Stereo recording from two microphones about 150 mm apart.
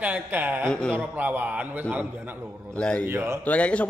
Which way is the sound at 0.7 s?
5° left (ahead or behind).